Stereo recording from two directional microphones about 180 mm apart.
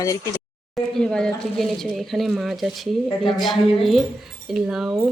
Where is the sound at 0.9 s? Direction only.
5° left (ahead or behind).